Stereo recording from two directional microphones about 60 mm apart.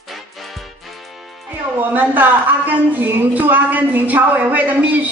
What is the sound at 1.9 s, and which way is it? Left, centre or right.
A woman's voice, right.